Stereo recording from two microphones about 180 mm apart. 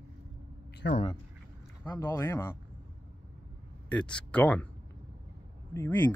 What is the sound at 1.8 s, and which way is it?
Speech, 15° left (ahead or behind).